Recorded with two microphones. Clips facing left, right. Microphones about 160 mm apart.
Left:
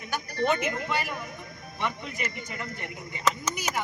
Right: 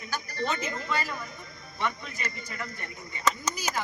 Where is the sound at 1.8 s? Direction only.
20° left (ahead or behind).